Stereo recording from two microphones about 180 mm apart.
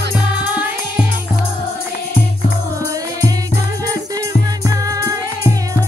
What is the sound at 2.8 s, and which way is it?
Music, 20° right (ahead or behind).